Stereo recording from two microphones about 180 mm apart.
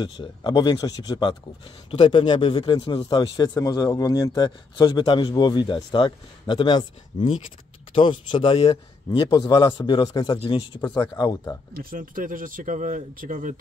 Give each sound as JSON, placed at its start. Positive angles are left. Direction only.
{"t": 0.0, "sound": "a man's voice", "side_deg": 25}
{"t": 9.3, "sound": "a man's voice", "side_deg": 20}
{"t": 11.7, "sound": "speech", "side_deg": -55}